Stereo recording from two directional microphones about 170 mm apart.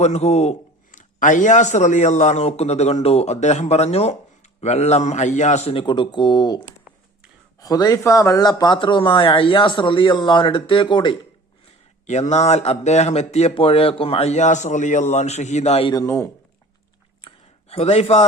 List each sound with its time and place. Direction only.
0.0 s speech: 40° left (ahead or behind)
7.6 s speech: 20° left (ahead or behind)
12.0 s speech: 45° left (ahead or behind)
15.9 s speech: 20° left (ahead or behind)
17.2 s a sound: 30° left (ahead or behind)